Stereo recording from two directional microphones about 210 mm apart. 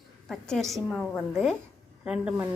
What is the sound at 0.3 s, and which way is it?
A woman's voice, centre (ahead or behind).